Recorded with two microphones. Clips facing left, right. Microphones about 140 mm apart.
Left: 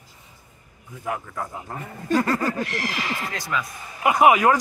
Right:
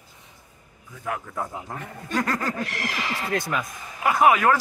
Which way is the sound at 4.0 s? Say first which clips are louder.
Left 2 dB; 10° left (ahead or behind).